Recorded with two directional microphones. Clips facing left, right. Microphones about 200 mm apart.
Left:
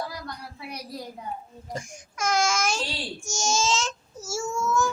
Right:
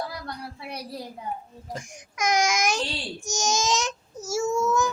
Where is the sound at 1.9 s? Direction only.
15° right (ahead or behind).